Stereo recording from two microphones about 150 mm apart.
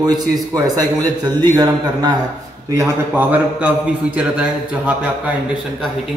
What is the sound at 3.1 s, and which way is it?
A man's voice, 10° right (ahead or behind).